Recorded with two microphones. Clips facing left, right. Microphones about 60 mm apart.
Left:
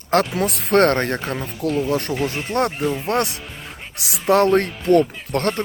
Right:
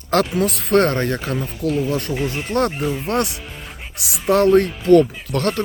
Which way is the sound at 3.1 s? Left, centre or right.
Left.